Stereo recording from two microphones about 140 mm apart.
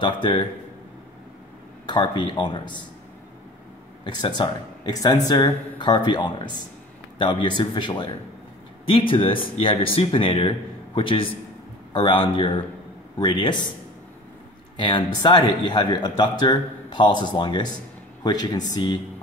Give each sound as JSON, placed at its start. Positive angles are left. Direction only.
{"t": 0.0, "sound": "speech", "side_deg": 35}
{"t": 1.9, "sound": "speech", "side_deg": 30}
{"t": 4.0, "sound": "speech", "side_deg": 35}
{"t": 14.8, "sound": "speech", "side_deg": 35}